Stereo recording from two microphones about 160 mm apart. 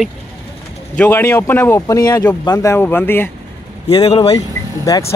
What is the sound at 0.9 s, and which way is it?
A man's voice, 10° left (ahead or behind).